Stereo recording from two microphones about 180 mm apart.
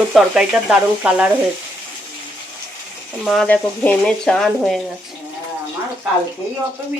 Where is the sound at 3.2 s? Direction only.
Centre (ahead or behind).